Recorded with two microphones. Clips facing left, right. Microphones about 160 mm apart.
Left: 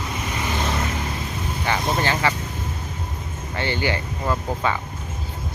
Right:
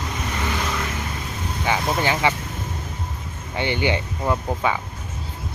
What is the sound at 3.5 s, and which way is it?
Speech, 15° right (ahead or behind).